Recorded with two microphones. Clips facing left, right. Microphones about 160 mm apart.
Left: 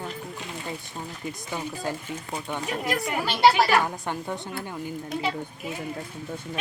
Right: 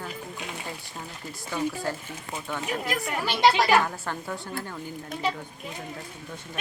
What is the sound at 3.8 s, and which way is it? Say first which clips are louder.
Speech: left 2 dB; 15° left (ahead or behind).